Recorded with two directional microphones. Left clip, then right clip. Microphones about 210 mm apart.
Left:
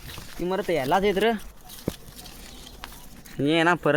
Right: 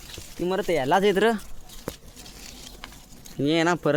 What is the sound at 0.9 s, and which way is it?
Speech, 30° right (ahead or behind).